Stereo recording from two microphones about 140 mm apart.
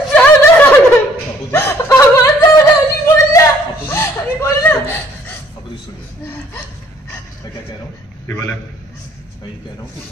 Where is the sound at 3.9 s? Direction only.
20° left (ahead or behind).